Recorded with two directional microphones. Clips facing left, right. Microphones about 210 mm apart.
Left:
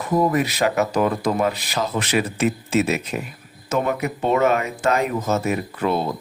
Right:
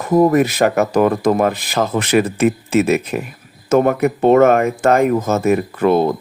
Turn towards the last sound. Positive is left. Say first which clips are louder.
# right 8 dB
turn(degrees=-55)  # may be behind; listen again after turning